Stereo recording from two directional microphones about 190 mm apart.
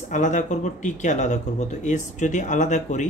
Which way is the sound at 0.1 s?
40° left (ahead or behind).